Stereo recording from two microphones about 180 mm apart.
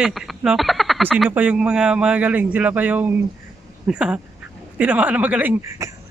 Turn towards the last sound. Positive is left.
turn(degrees=-10)  # may be behind; listen again after turning